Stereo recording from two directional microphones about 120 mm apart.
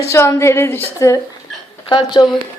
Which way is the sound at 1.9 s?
40° left (ahead or behind).